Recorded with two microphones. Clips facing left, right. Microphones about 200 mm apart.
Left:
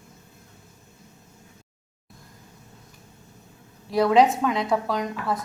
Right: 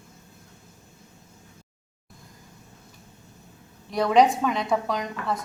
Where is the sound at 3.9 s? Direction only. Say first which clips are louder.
Left 1 dB; centre (ahead or behind).